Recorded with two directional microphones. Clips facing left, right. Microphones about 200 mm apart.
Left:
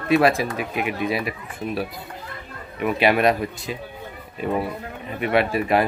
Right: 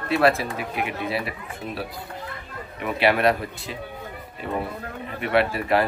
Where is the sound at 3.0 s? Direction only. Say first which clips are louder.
Left 1 dB; 15° left (ahead or behind).